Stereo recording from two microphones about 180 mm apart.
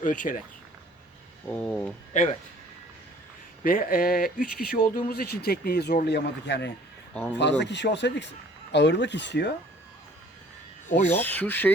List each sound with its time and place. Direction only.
0.0 s speech: 45° left (ahead or behind)
1.5 s speech: 10° left (ahead or behind)
3.6 s speech: 50° left (ahead or behind); by 6.7 s 70° left (ahead or behind)
7.1 s speech: 5° left (ahead or behind)
7.6 s speech: 75° left (ahead or behind)
10.8 s speech: 45° left (ahead or behind)
11.1 s speech: 10° left (ahead or behind)